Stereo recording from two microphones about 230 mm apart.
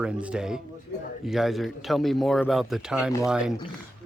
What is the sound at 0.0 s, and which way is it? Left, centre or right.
Speech, centre.